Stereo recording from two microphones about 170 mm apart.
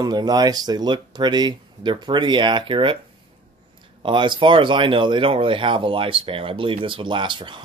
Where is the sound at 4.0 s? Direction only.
30° right (ahead or behind).